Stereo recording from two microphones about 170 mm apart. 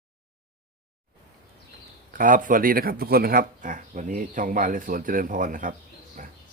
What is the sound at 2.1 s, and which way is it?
Speech, 50° right (ahead or behind).